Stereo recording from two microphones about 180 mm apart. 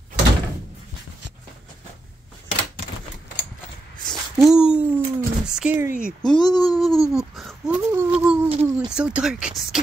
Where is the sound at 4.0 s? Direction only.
Centre (ahead or behind).